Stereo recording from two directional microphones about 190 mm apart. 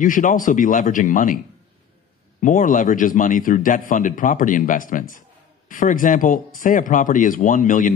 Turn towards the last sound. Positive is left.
turn(degrees=45)  # may be behind; listen again after turning